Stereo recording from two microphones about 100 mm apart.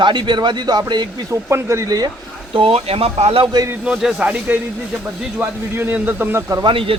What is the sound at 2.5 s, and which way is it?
Speech, 65° right (ahead or behind).